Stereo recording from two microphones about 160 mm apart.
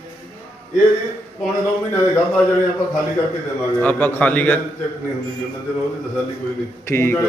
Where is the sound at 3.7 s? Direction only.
10° left (ahead or behind).